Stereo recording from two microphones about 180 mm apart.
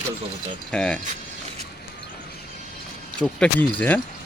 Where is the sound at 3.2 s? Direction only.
5° left (ahead or behind).